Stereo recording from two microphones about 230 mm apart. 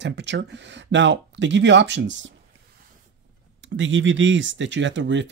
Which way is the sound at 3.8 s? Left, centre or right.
Right.